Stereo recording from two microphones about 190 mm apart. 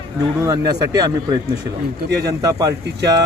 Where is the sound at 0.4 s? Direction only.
20° right (ahead or behind).